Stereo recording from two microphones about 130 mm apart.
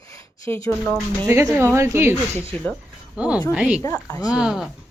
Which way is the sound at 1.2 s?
25° right (ahead or behind).